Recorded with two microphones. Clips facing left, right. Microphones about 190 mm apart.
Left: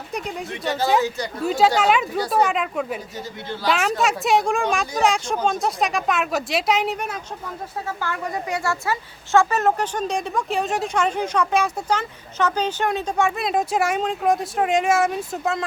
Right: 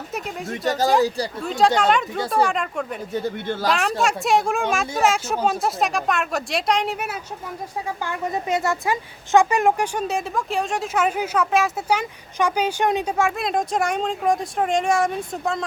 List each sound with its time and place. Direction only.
0.1 s a sound: centre (ahead or behind)
0.7 s speech: 40° right (ahead or behind)
1.5 s a woman's voice: 5° left (ahead or behind)
3.1 s a man's voice: 55° right (ahead or behind)
3.7 s a woman's voice: centre (ahead or behind)
7.9 s speech: 20° right (ahead or behind)
13.1 s a woman's voice: centre (ahead or behind)